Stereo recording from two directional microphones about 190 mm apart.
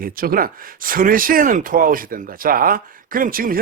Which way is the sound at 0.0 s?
50° right (ahead or behind).